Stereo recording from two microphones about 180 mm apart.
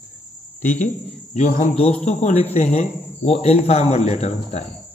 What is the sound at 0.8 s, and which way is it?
Speech, 45° left (ahead or behind).